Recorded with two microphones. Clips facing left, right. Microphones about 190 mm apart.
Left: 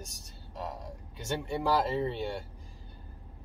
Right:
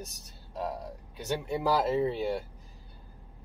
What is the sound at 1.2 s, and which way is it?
Speech, 10° right (ahead or behind).